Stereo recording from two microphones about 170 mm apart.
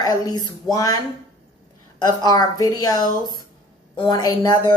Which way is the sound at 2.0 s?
25° left (ahead or behind).